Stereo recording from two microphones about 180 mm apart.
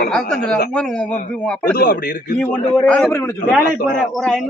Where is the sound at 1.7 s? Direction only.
55° left (ahead or behind).